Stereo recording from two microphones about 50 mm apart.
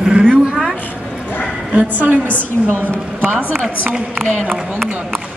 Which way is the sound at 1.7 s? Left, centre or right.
Right.